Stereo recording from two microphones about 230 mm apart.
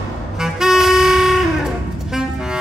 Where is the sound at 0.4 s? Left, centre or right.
Centre.